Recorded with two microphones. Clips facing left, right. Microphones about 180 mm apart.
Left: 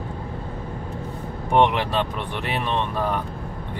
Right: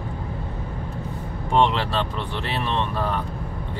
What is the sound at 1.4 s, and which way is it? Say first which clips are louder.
Speech: left 1 dB; 15° left (ahead or behind).